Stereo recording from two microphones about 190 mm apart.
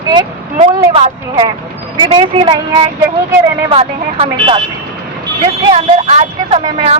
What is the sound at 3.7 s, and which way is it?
Speech, 30° right (ahead or behind).